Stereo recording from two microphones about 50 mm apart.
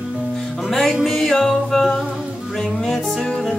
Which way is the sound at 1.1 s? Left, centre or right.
Centre.